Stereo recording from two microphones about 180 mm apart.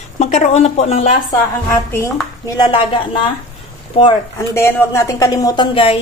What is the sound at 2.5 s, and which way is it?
Speech, 25° left (ahead or behind).